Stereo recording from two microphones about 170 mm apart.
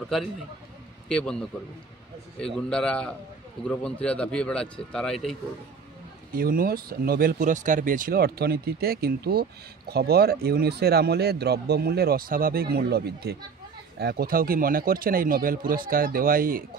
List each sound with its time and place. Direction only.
1.0 s a man's voice: 5° left (ahead or behind)
2.4 s speech: 5° left (ahead or behind)
6.3 s speech: 60° right (ahead or behind)